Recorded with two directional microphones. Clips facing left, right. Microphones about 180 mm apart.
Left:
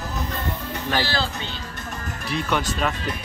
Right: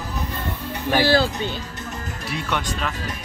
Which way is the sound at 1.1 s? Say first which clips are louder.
Right 8 dB; 50° right (ahead or behind).